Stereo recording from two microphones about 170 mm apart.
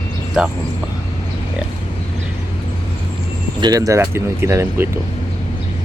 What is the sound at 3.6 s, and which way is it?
Speech, 20° right (ahead or behind).